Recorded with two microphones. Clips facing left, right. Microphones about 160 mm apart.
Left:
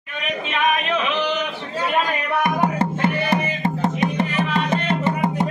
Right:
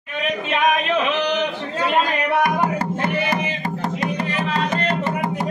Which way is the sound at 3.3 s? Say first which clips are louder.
Left 2 dB; 25° left (ahead or behind).